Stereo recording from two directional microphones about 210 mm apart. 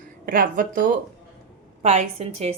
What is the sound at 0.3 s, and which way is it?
Speech, 40° right (ahead or behind).